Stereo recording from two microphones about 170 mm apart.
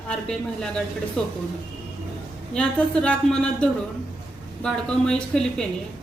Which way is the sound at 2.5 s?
5° left (ahead or behind).